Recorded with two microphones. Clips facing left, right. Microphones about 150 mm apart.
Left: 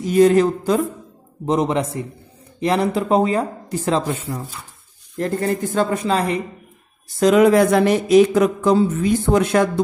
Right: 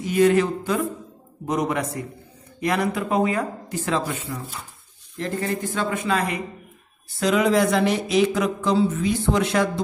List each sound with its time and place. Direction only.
0.0 s a man's voice: 35° left (ahead or behind)
7.1 s speech: 45° left (ahead or behind)